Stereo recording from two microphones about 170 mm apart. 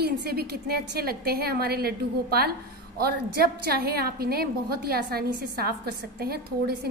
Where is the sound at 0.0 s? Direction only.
70° right (ahead or behind).